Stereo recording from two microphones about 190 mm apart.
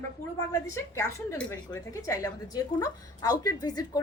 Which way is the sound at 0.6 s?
15° left (ahead or behind).